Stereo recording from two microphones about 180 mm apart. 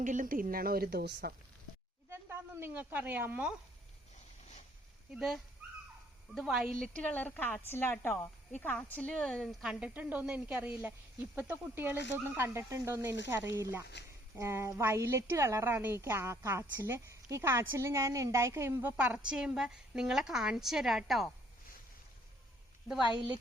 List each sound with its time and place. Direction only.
0.0 s a woman's voice: 45° right (ahead or behind)
2.0 s speech: 15° right (ahead or behind)
5.1 s a woman's voice: centre (ahead or behind)
22.9 s a woman's voice: 5° right (ahead or behind)